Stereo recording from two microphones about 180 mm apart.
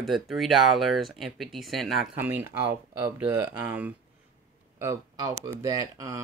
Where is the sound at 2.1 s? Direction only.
10° right (ahead or behind).